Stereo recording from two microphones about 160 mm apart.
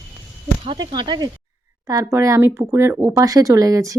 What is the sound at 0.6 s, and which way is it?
Speech, 35° right (ahead or behind).